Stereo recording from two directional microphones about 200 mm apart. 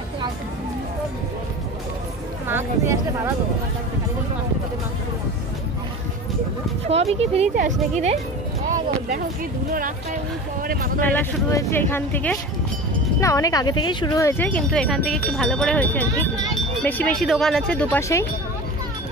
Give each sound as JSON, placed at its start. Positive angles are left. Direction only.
{"t": 2.4, "sound": "speech", "side_deg": -10}
{"t": 6.9, "sound": "speech", "side_deg": -30}
{"t": 9.7, "sound": "speech", "side_deg": -45}
{"t": 11.0, "sound": "speech", "side_deg": 10}